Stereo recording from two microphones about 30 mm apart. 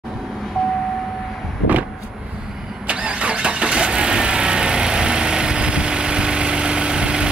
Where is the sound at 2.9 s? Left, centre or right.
Right.